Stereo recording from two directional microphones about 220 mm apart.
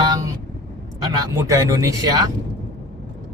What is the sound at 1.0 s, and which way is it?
Speech, 15° right (ahead or behind).